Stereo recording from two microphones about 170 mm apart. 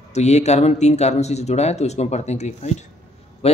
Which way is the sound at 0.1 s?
40° left (ahead or behind).